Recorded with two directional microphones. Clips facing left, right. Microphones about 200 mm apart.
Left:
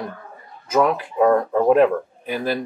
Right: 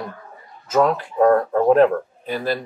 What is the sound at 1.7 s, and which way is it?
Speech, 10° left (ahead or behind).